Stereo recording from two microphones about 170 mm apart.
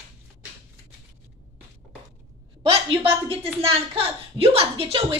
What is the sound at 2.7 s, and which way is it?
A woman's voice, 35° right (ahead or behind).